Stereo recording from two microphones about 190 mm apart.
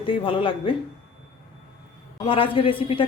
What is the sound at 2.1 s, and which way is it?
Speech, 30° left (ahead or behind).